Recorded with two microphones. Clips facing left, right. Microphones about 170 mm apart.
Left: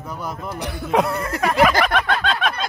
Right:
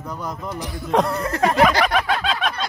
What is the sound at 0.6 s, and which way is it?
Speech, 65° left (ahead or behind).